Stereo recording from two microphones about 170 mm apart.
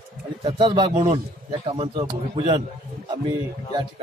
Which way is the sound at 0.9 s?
50° right (ahead or behind).